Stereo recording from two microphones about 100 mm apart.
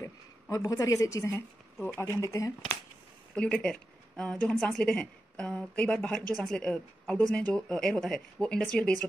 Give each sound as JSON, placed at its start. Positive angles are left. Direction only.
{"t": 0.0, "sound": "a woman's voice", "side_deg": 30}
{"t": 3.3, "sound": "speech", "side_deg": 10}